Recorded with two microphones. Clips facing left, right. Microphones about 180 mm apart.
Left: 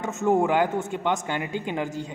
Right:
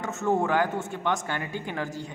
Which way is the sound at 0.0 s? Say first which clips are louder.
Left 4 dB; 15° left (ahead or behind).